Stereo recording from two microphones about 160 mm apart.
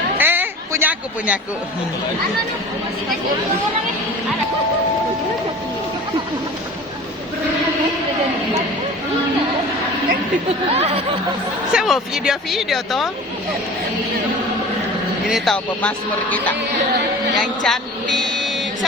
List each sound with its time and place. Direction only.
0.2 s a sound: 10° right (ahead or behind)
10.8 s speech: 40° right (ahead or behind)
11.7 s speech: 5° right (ahead or behind)
15.3 s a woman's voice: 5° left (ahead or behind)